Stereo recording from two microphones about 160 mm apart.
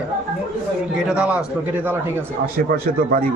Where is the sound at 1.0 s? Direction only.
5° right (ahead or behind).